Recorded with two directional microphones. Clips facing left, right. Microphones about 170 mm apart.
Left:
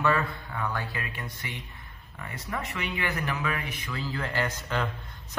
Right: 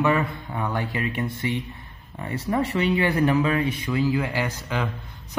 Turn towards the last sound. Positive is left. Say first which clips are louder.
# right 3 dB
turn(degrees=-10)  # may be behind; listen again after turning